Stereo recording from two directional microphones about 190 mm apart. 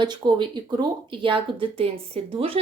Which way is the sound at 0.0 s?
25° right (ahead or behind).